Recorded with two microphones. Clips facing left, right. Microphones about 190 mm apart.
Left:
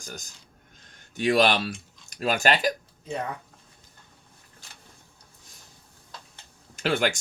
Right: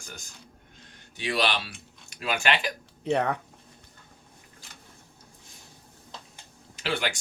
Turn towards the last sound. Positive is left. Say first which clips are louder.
# left 5 dB
turn(degrees=45)  # may be behind; listen again after turning